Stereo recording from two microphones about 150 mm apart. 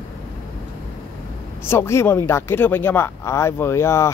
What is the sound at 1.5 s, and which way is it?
Speech, 15° left (ahead or behind).